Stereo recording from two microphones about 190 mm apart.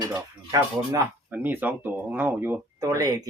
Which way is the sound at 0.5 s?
15° right (ahead or behind).